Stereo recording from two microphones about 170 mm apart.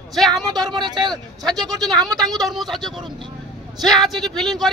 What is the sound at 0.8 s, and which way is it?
Speech, 25° right (ahead or behind).